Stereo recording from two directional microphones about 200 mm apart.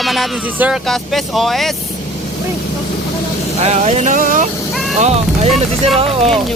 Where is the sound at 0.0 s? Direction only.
Centre (ahead or behind).